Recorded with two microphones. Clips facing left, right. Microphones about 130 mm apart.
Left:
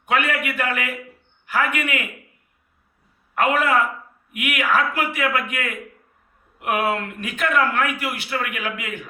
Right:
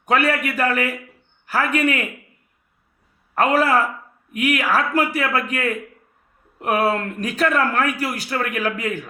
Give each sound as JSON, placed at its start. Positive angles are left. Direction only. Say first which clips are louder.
{"t": 0.0, "sound": "speech", "louder": "right 3 dB", "side_deg": -35}
{"t": 3.3, "sound": "speech", "louder": "right 2 dB", "side_deg": -35}